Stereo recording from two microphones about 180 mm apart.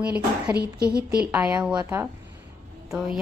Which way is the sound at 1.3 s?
5° right (ahead or behind).